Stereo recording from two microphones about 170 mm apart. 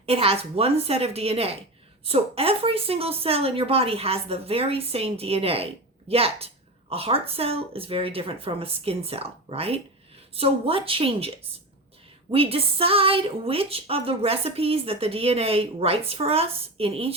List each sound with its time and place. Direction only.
0.0 s a woman's voice: 35° right (ahead or behind)
12.3 s a woman's voice: 35° right (ahead or behind)